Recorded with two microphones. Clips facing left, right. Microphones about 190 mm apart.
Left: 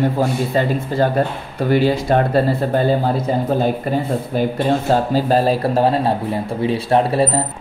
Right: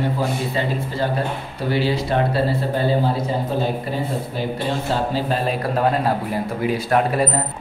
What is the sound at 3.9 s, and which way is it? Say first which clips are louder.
Speech: left 5 dB; 55° left (ahead or behind).